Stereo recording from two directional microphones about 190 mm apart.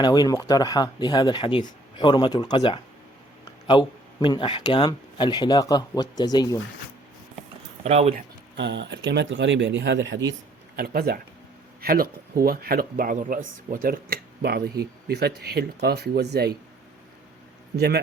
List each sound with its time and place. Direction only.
0.0 s speech: 20° left (ahead or behind)
7.9 s speech: 35° right (ahead or behind)
8.5 s speech: 70° right (ahead or behind)
10.8 s speech: 55° right (ahead or behind)
17.7 s speech: 60° right (ahead or behind)